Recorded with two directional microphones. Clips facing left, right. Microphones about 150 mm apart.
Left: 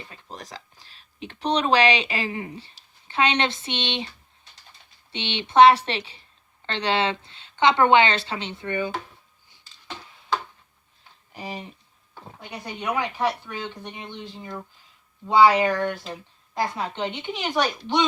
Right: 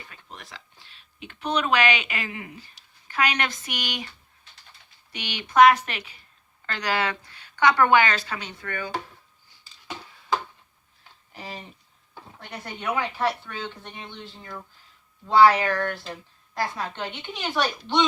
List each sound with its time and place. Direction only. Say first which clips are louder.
0.0 s a sound: left 4 dB; 30° left (ahead or behind)
3.1 s a woman's voice: left 3 dB; 25° left (ahead or behind)
5.1 s a woman's voice: left 2 dB; 25° left (ahead or behind)
9.8 s tick-tock: right 1 dB; 5° right (ahead or behind)
11.3 s a woman's voice: left 4 dB; 15° left (ahead or behind)